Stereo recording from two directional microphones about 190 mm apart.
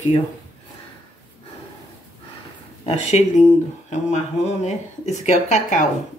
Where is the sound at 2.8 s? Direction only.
35° left (ahead or behind).